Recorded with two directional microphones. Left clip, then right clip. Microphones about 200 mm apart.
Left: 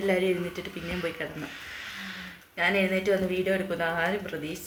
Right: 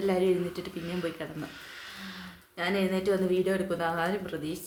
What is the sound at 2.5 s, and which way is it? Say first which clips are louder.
Speech: left 4 dB; 5° right (ahead or behind).